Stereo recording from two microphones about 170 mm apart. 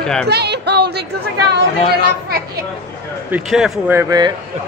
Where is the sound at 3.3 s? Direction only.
Centre (ahead or behind).